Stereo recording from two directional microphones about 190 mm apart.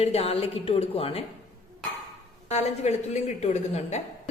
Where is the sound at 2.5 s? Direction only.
35° left (ahead or behind).